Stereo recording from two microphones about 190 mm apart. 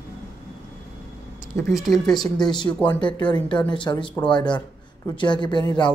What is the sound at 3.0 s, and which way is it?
Speech, 25° left (ahead or behind).